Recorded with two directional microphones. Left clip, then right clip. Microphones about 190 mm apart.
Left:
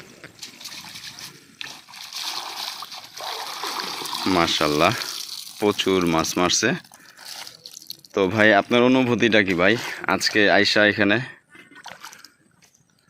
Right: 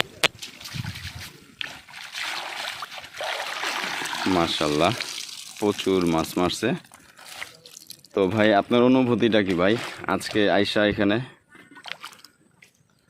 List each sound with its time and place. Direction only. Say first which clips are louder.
0.3 s splash: even; 10° right (ahead or behind)
3.2 s splash: right 2 dB; 30° right (ahead or behind)
4.1 s speech: left 4 dB; centre (ahead or behind)